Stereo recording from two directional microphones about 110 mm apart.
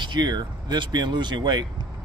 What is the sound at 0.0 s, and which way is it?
Speech, 45° right (ahead or behind).